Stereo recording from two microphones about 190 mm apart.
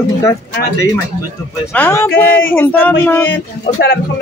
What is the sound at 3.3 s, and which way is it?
Speech, 70° left (ahead or behind).